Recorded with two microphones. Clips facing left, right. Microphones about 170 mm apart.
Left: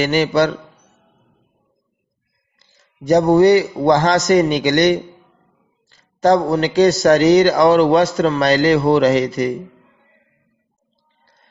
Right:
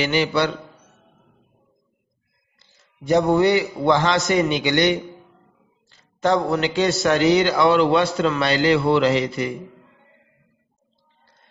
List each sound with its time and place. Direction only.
0.0 s a man's voice: 45° left (ahead or behind)
2.6 s a man's voice: 40° left (ahead or behind)